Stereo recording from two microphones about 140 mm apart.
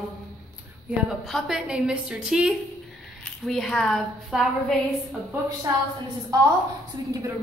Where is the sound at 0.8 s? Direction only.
Centre (ahead or behind).